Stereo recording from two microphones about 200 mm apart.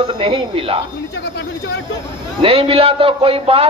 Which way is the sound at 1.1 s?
60° left (ahead or behind).